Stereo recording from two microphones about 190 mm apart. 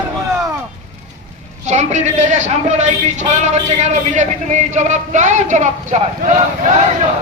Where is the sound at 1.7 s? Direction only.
40° right (ahead or behind).